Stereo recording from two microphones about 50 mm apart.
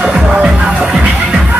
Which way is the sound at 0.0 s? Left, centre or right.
Right.